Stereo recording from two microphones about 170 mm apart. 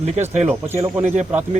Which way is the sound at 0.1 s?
40° right (ahead or behind).